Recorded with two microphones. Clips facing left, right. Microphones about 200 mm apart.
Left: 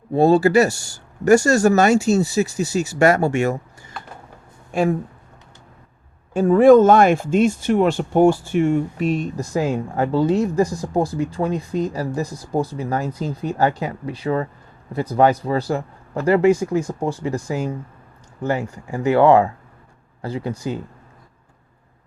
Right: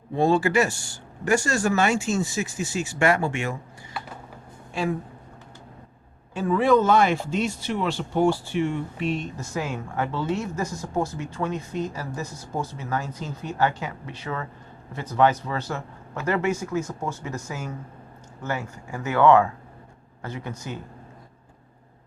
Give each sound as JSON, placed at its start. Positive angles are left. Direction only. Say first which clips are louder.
{"t": 0.1, "sound": "speech", "louder": "left 7 dB", "side_deg": 35}
{"t": 4.7, "sound": "speech", "louder": "left 7 dB", "side_deg": 50}
{"t": 6.3, "sound": "speech", "louder": "left 9 dB", "side_deg": 45}